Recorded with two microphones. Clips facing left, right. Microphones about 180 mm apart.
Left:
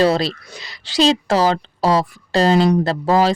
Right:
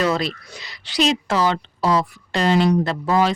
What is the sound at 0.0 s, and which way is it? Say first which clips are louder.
Speech: left 5 dB; 30° left (ahead or behind).